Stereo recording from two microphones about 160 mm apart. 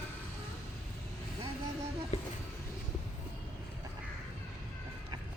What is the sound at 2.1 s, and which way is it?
Speech, 40° left (ahead or behind).